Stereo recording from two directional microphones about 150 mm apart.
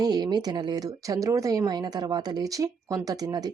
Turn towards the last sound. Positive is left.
turn(degrees=-25)  # may be behind; listen again after turning